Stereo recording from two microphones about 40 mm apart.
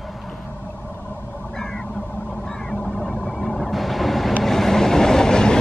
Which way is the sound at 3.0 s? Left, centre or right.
Centre.